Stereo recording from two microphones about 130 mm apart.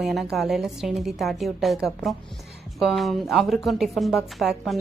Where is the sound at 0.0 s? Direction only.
Centre (ahead or behind).